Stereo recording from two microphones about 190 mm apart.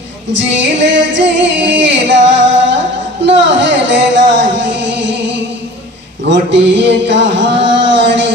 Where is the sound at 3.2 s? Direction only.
70° right (ahead or behind).